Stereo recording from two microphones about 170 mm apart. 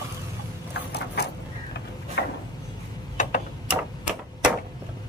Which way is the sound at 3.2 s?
45° left (ahead or behind).